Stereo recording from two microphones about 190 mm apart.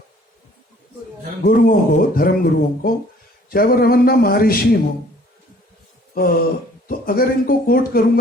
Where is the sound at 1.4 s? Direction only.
50° left (ahead or behind).